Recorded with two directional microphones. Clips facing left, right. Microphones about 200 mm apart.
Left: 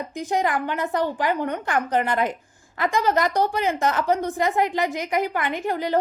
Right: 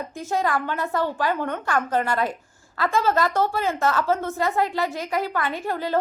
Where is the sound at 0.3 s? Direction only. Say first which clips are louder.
Left 1 dB; 15° left (ahead or behind).